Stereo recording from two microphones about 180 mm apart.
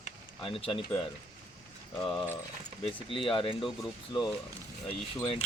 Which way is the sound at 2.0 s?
5° left (ahead or behind).